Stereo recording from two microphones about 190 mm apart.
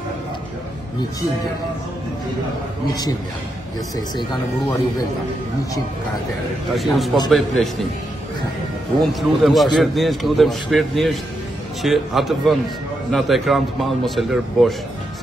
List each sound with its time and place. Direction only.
3.9 s speech: 25° left (ahead or behind)
6.7 s a man's voice: centre (ahead or behind)
9.0 s a man's voice: centre (ahead or behind)